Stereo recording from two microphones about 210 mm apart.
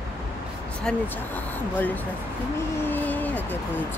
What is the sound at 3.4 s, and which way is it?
Speech, 10° left (ahead or behind).